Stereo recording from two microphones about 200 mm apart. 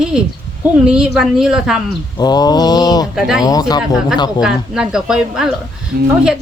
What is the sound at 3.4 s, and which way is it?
Speech, 20° left (ahead or behind).